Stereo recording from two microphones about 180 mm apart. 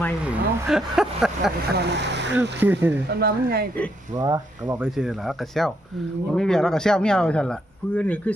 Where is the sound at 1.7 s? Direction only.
70° right (ahead or behind).